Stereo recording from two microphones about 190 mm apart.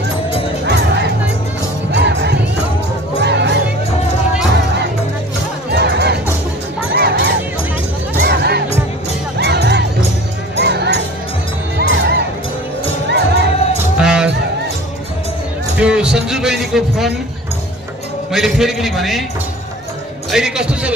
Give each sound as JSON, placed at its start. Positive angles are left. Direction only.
{"t": 1.9, "sound": "music", "side_deg": -65}
{"t": 5.7, "sound": "music", "side_deg": -60}
{"t": 6.9, "sound": "honk", "side_deg": -60}
{"t": 8.2, "sound": "music", "side_deg": -60}
{"t": 13.9, "sound": "music", "side_deg": -5}
{"t": 15.8, "sound": "music", "side_deg": -5}
{"t": 18.3, "sound": "a man's voice", "side_deg": 0}
{"t": 20.2, "sound": "speech", "side_deg": -5}